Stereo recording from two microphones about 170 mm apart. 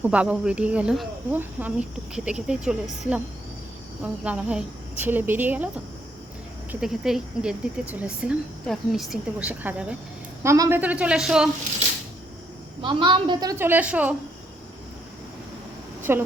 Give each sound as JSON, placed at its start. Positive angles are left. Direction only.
{"t": 0.0, "sound": "speech", "side_deg": -10}
{"t": 4.0, "sound": "speech", "side_deg": -10}
{"t": 12.8, "sound": "speech", "side_deg": -30}
{"t": 16.1, "sound": "speech", "side_deg": -15}